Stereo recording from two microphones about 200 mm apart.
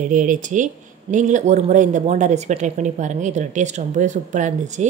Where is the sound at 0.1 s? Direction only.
40° right (ahead or behind).